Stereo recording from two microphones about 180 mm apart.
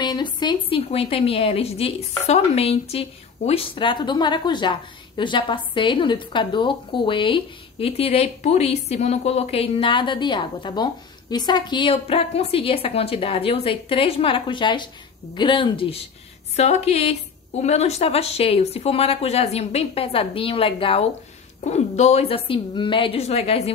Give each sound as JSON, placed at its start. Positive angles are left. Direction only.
{"t": 0.0, "sound": "a woman's voice", "side_deg": 25}